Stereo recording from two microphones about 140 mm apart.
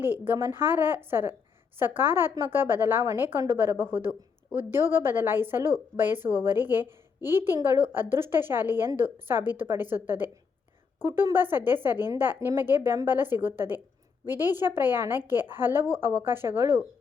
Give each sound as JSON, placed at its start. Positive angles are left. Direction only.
{"t": 0.0, "sound": "a woman's voice", "side_deg": -15}